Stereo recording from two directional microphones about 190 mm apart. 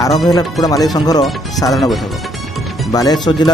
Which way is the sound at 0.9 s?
20° left (ahead or behind).